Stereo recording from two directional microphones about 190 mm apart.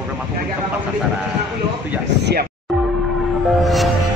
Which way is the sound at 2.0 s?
65° right (ahead or behind).